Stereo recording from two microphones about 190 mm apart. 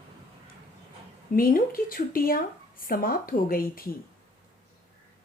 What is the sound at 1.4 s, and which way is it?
Speech, 50° left (ahead or behind).